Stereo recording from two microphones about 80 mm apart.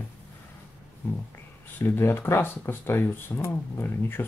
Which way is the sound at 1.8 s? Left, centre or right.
Left.